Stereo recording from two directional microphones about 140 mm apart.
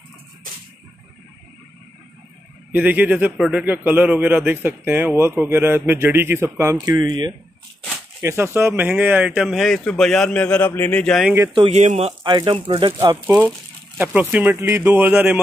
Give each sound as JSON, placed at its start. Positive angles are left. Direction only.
{"t": 2.7, "sound": "a man's voice", "side_deg": -10}
{"t": 8.2, "sound": "speech", "side_deg": -20}
{"t": 11.2, "sound": "a man's voice", "side_deg": -20}
{"t": 11.5, "sound": "speech", "side_deg": -45}
{"t": 12.2, "sound": "speech", "side_deg": -35}
{"t": 13.9, "sound": "a man's voice", "side_deg": -10}